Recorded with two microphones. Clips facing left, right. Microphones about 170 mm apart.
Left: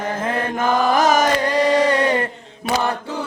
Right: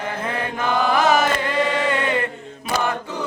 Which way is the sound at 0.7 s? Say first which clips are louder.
Left 1 dB; 40° left (ahead or behind).